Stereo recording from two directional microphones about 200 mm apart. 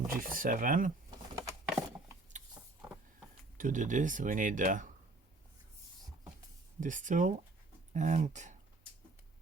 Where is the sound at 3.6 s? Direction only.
40° right (ahead or behind).